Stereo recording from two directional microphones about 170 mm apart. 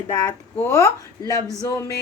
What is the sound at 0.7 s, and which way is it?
A woman's voice, 20° left (ahead or behind).